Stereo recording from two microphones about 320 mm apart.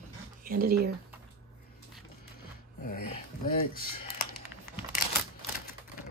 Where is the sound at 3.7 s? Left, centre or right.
Left.